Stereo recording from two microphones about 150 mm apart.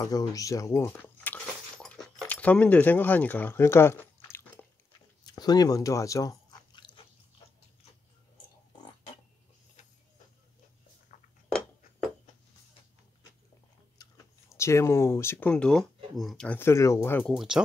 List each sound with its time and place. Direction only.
0.0 s speech: 25° left (ahead or behind)
0.9 s a sound: 10° left (ahead or behind)
5.2 s chewing: 25° left (ahead or behind)
11.4 s a sound: 5° left (ahead or behind)
13.9 s speech: 20° left (ahead or behind); by 16.5 s centre (ahead or behind)
16.5 s speech: 20° left (ahead or behind)